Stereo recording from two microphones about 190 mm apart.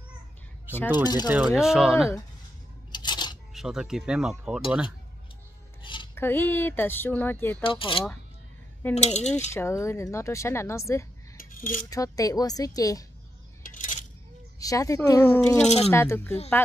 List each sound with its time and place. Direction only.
1.0 s speech: 20° left (ahead or behind)
1.3 s speech: 5° right (ahead or behind)
2.9 s coin: 25° left (ahead or behind)
3.5 s speech: centre (ahead or behind)
5.8 s a sound: 25° left (ahead or behind)
6.1 s a woman's voice: 10° left (ahead or behind)
7.6 s speech: 25° left (ahead or behind)
9.5 s a woman's voice: 15° left (ahead or behind)
11.3 s cutlery: 45° left (ahead or behind)
11.9 s speech: 20° left (ahead or behind)
13.6 s coin: 45° left (ahead or behind)
14.6 s a woman's voice: 15° left (ahead or behind)
15.6 s speech: 35° left (ahead or behind)
15.9 s a woman's voice: 15° left (ahead or behind)